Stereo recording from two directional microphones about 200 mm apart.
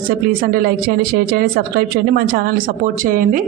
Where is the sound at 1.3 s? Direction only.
50° right (ahead or behind).